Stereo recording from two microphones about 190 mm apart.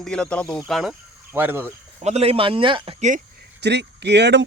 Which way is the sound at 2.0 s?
35° right (ahead or behind).